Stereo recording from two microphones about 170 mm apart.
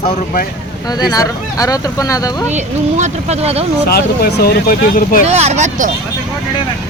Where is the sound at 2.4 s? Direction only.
45° right (ahead or behind).